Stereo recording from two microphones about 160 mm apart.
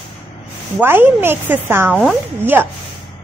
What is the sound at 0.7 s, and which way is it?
Speech, 10° right (ahead or behind).